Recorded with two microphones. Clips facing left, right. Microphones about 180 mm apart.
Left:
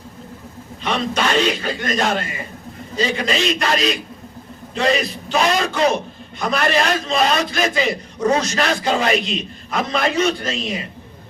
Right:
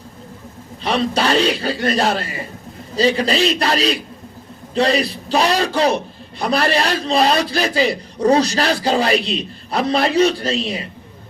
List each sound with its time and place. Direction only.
0.8 s a man's voice: 35° right (ahead or behind)